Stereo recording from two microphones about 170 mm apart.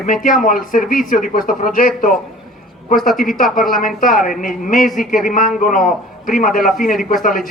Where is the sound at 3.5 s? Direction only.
55° left (ahead or behind).